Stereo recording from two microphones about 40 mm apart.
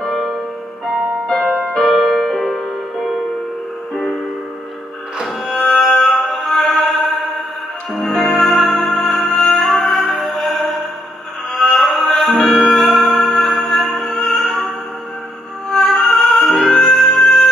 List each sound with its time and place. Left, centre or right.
0.0 s music: centre
1.2 s music: centre
1.7 s music: centre
5.4 s music: centre
6.6 s music: centre
7.9 s music: centre
8.5 s music: centre
15.8 s music: centre